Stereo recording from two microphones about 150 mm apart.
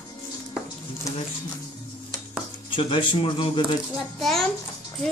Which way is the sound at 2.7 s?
35° left (ahead or behind).